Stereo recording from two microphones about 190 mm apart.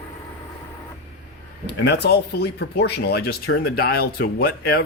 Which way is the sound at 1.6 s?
60° left (ahead or behind).